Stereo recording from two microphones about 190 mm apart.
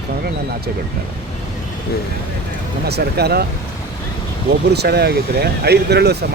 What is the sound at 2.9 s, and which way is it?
Speech, 60° right (ahead or behind).